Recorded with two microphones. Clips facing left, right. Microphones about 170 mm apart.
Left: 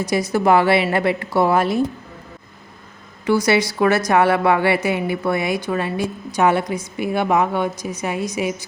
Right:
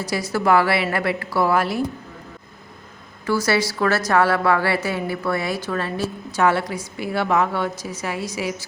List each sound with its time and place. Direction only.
0.0 s a woman's voice: 20° left (ahead or behind)
3.2 s a woman's voice: 20° left (ahead or behind)